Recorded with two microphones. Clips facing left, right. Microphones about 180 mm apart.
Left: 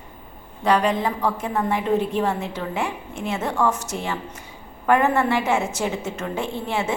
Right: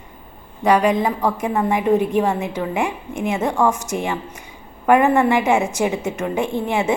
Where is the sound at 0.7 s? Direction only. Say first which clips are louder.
Right 4 dB; 10° right (ahead or behind).